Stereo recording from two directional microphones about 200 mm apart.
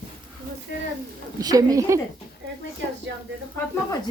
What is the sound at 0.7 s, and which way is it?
Speech, 50° left (ahead or behind).